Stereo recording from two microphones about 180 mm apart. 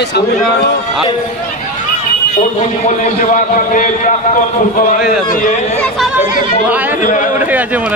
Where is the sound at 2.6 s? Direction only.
45° left (ahead or behind).